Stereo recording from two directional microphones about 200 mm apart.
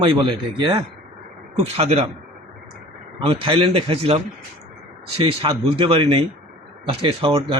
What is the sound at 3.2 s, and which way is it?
Speech, 25° right (ahead or behind).